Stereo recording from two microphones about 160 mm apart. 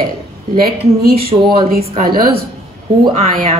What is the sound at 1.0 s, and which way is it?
A woman's voice, 70° right (ahead or behind).